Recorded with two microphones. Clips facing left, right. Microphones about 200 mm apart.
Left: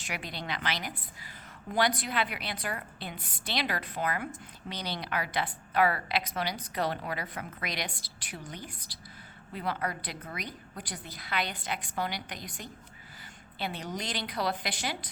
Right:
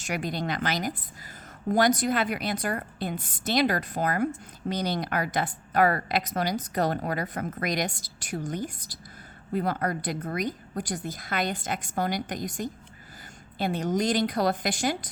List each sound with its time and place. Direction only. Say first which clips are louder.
0.0 s a woman's voice: right 8 dB; 45° right (ahead or behind)